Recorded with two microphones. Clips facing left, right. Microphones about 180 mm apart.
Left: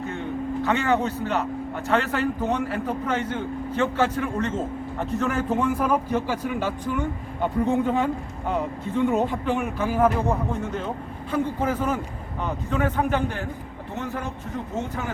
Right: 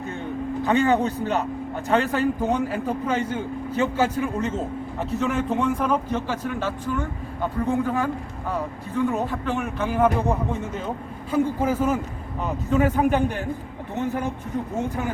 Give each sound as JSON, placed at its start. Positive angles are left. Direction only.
{"t": 0.6, "sound": "a man's voice", "side_deg": -15}